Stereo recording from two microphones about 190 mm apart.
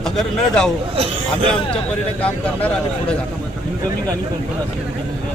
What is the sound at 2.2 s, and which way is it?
Speech, 5° left (ahead or behind).